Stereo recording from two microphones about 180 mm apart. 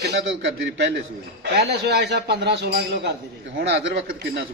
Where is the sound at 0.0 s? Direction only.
80° right.